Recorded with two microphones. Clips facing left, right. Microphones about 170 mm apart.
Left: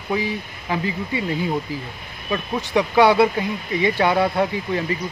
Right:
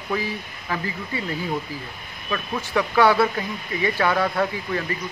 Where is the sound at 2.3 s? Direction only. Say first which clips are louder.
Left 3 dB; 20° left (ahead or behind).